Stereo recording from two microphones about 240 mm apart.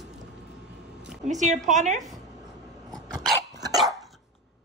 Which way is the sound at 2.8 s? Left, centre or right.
Centre.